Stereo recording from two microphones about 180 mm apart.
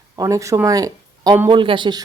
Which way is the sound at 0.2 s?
20° right (ahead or behind).